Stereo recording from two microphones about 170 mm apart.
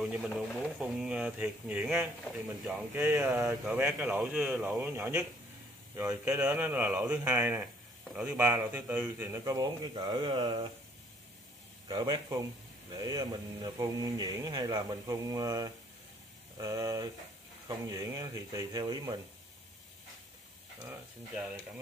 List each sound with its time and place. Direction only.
0.0 s speech: 5° right (ahead or behind); by 10.7 s 25° right (ahead or behind)
11.9 s speech: 25° right (ahead or behind)